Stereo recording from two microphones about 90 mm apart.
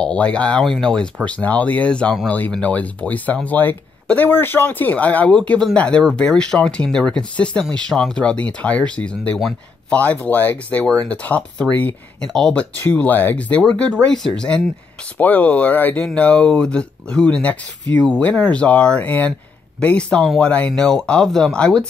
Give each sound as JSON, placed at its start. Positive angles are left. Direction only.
{"t": 0.0, "sound": "speech", "side_deg": 10}
{"t": 12.8, "sound": "speech", "side_deg": 20}